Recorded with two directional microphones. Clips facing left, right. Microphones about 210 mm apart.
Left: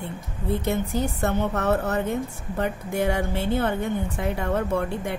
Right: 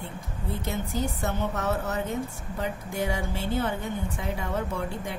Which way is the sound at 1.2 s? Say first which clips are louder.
Left 5 dB; 60° left (ahead or behind).